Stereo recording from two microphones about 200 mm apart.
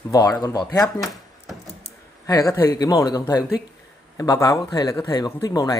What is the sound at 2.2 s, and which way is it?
A man's voice, 15° left (ahead or behind).